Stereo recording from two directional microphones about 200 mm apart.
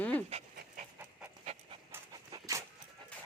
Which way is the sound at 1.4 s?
30° right (ahead or behind).